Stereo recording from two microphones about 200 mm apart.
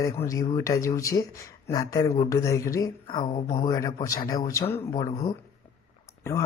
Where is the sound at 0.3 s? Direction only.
15° left (ahead or behind).